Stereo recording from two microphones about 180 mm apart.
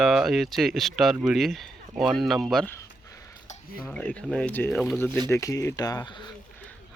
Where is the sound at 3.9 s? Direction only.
5° left (ahead or behind); by 6.3 s 20° left (ahead or behind).